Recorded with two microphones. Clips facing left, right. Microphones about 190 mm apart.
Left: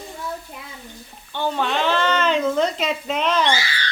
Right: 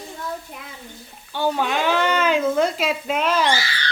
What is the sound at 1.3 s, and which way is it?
Speech, 10° right (ahead or behind).